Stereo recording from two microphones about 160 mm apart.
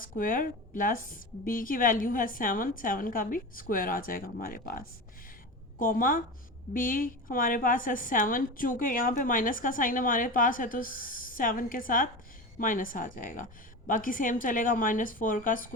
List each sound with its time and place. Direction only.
0.0 s a woman's voice: 60° left (ahead or behind)